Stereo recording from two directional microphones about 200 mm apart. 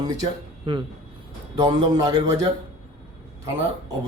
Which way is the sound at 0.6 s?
25° right (ahead or behind).